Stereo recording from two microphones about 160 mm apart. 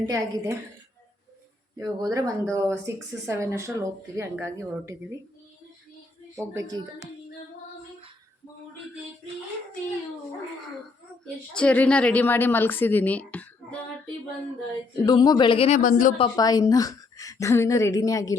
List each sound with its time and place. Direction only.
0.0 s a woman's voice: 20° right (ahead or behind)
1.8 s speech: 25° right (ahead or behind)
6.5 s a woman's voice: 20° right (ahead or behind)
11.5 s a woman's voice: 10° left (ahead or behind)
15.0 s a woman's voice: 25° left (ahead or behind)
15.8 s speech: 55° left (ahead or behind)
16.3 s a woman's voice: 25° left (ahead or behind)